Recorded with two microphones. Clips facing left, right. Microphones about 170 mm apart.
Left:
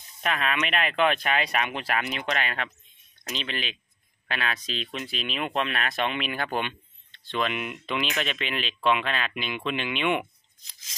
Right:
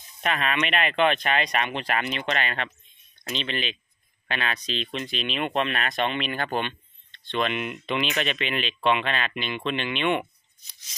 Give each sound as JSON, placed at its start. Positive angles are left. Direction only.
{"t": 0.2, "sound": "speech", "side_deg": 0}
{"t": 10.7, "sound": "rub", "side_deg": 90}